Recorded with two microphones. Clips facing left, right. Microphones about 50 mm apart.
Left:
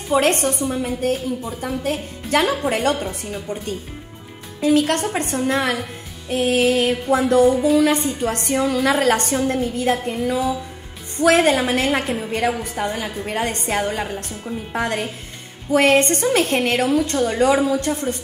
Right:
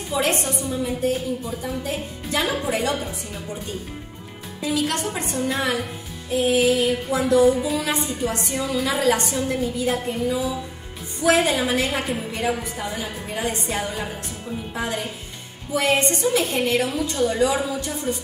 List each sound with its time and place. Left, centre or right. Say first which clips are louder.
0.1 s a woman's voice: left 6 dB; left
4.6 s a woman's voice: left 7 dB; left
7.4 s music: left 4 dB; centre
7.8 s a woman's voice: left 6 dB; left